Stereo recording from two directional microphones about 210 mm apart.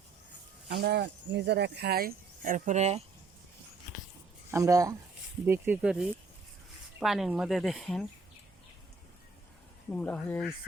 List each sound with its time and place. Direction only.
0.7 s speech: 50° right (ahead or behind); by 3.0 s 35° right (ahead or behind)
4.5 s speech: 15° right (ahead or behind); by 8.0 s centre (ahead or behind)
9.9 s speech: 5° left (ahead or behind)